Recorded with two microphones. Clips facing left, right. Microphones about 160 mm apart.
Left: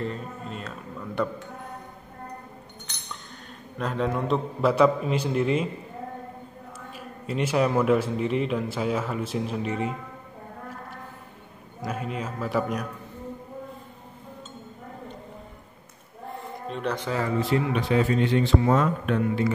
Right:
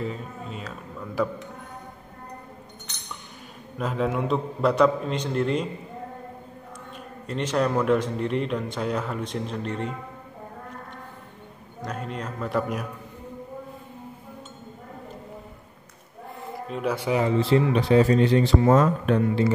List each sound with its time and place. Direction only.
0.0 s speech: centre (ahead or behind)
3.7 s speech: 5° right (ahead or behind)
7.2 s speech: 5° left (ahead or behind)
11.8 s speech: 5° left (ahead or behind)
16.3 s a sound: centre (ahead or behind)
17.4 s speech: 30° right (ahead or behind)